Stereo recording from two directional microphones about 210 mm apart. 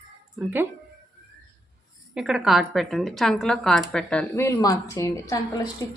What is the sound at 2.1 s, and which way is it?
A woman's voice, centre (ahead or behind).